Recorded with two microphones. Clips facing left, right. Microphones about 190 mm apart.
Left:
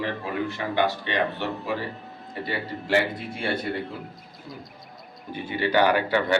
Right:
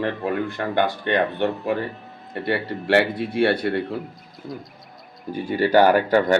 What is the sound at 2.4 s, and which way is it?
Speech, 65° right (ahead or behind).